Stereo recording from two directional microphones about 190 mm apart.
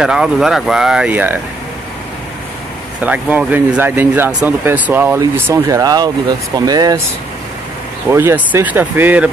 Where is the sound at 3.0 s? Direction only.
10° right (ahead or behind).